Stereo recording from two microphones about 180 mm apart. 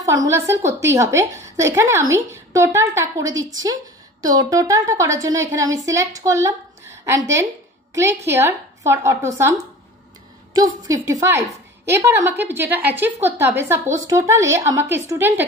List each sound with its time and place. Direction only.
0.0 s a woman's voice: 20° right (ahead or behind)